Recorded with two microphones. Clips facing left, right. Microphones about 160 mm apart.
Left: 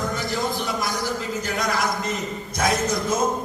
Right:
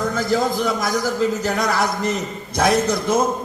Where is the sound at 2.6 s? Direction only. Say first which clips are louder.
Right 5 dB; 65° right (ahead or behind).